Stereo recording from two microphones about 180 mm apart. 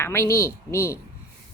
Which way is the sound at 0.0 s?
15° left (ahead or behind).